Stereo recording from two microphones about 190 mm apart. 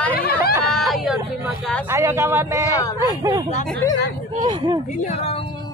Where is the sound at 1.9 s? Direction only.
15° right (ahead or behind).